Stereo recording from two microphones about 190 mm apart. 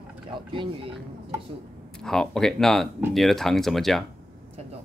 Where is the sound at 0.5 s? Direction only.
25° right (ahead or behind).